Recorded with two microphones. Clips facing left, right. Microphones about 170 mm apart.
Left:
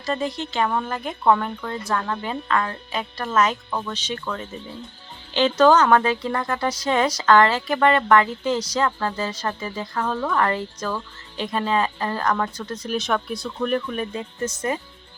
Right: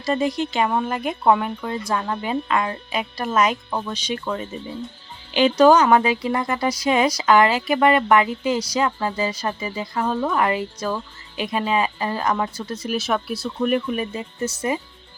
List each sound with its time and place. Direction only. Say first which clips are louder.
0.0 s speech: right 4 dB; 10° right (ahead or behind)